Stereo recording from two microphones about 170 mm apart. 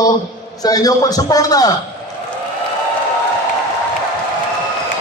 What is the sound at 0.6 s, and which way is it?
A man's voice, 20° left (ahead or behind).